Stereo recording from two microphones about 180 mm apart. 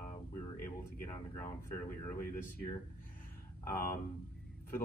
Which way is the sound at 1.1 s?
15° left (ahead or behind).